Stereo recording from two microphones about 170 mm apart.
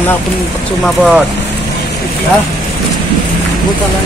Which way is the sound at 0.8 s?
Centre (ahead or behind).